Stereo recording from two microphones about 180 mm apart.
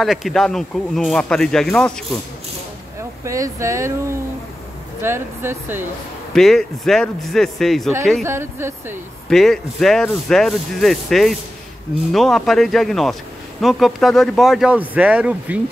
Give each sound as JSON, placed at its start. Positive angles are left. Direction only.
{"t": 0.0, "sound": "speech", "side_deg": 0}
{"t": 3.0, "sound": "speech", "side_deg": -15}
{"t": 5.0, "sound": "speech", "side_deg": -15}
{"t": 6.3, "sound": "speech", "side_deg": 0}
{"t": 8.2, "sound": "speech", "side_deg": -15}
{"t": 9.3, "sound": "speech", "side_deg": 0}